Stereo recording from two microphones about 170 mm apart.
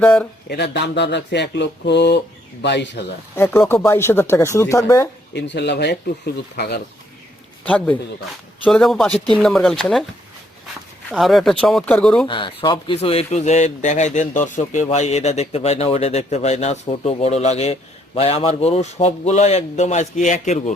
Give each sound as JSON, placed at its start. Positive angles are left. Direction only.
{"t": 0.0, "sound": "speech", "side_deg": 5}
{"t": 0.4, "sound": "speech", "side_deg": 80}
{"t": 3.3, "sound": "speech", "side_deg": 15}
{"t": 5.3, "sound": "speech", "side_deg": 90}
{"t": 7.6, "sound": "speech", "side_deg": 10}
{"t": 11.1, "sound": "speech", "side_deg": 0}
{"t": 12.3, "sound": "speech", "side_deg": 30}